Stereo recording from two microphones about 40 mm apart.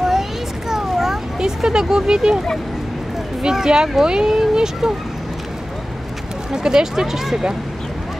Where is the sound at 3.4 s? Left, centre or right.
Centre.